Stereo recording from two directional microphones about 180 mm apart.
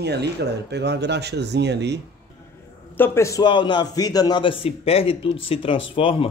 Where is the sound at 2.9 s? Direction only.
10° left (ahead or behind); by 6.3 s 30° left (ahead or behind).